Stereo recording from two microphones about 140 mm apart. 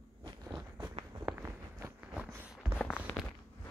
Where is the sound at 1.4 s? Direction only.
15° right (ahead or behind).